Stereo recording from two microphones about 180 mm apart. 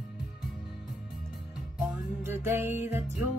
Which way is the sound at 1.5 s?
5° right (ahead or behind).